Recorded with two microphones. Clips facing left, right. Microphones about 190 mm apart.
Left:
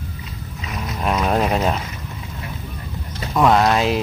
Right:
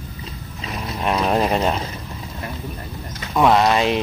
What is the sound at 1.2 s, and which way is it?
Speech, centre (ahead or behind).